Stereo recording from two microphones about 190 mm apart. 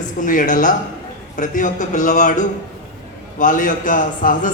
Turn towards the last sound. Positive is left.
turn(degrees=45)  # may be behind; listen again after turning